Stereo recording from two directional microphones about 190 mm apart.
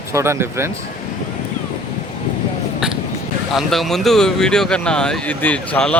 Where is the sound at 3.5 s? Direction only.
Centre (ahead or behind).